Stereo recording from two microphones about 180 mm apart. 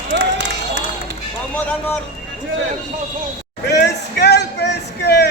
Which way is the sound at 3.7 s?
70° left (ahead or behind).